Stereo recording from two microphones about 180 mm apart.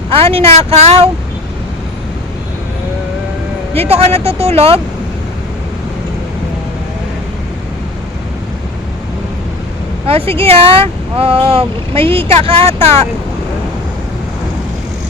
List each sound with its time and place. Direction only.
0.1 s speech: 30° right (ahead or behind)
3.8 s speech: 35° right (ahead or behind)
10.1 s speech: 30° right (ahead or behind)